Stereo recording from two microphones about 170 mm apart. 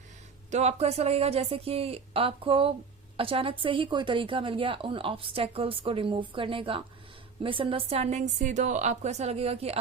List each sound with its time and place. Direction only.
0.5 s a woman's voice: 40° right (ahead or behind)